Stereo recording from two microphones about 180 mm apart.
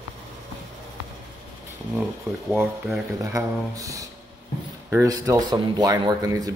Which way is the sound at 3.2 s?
20° right (ahead or behind).